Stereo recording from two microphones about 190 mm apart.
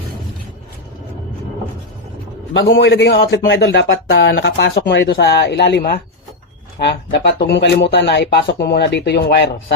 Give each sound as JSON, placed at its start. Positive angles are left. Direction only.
{"t": 2.5, "sound": "a man's voice", "side_deg": 80}